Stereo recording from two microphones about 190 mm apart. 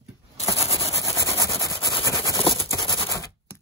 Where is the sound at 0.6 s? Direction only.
30° left (ahead or behind).